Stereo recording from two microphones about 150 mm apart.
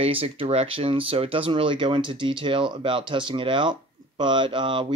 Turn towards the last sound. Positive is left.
turn(degrees=-35)  # may be behind; listen again after turning